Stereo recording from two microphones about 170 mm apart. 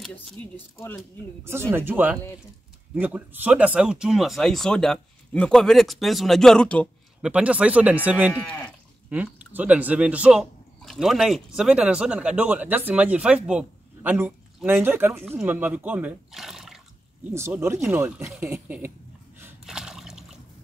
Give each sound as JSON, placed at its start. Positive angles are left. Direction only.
{"t": 0.0, "sound": "speech", "side_deg": 5}
{"t": 1.7, "sound": "speech", "side_deg": -10}
{"t": 7.2, "sound": "speech", "side_deg": -5}
{"t": 17.3, "sound": "speech", "side_deg": -15}
{"t": 19.6, "sound": "a sound", "side_deg": -5}